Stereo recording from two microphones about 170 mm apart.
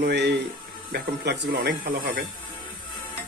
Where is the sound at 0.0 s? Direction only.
85° right.